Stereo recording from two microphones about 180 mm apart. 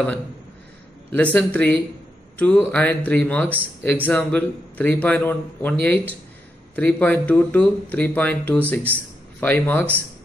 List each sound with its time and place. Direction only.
1.1 s a man's voice: 10° left (ahead or behind)